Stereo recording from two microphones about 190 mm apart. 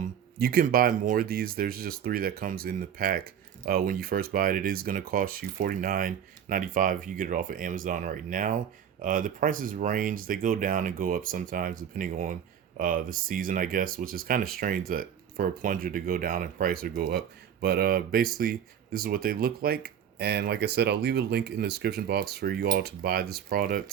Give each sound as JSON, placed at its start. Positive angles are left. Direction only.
{"t": 0.3, "sound": "speech", "side_deg": -50}